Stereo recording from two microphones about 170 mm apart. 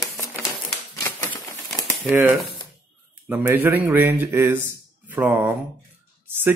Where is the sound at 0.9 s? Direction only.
15° left (ahead or behind).